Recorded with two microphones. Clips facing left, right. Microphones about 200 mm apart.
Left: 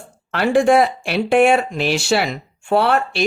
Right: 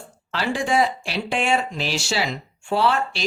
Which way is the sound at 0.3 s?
55° left (ahead or behind).